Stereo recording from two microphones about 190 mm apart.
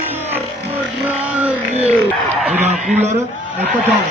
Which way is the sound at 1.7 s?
35° right (ahead or behind).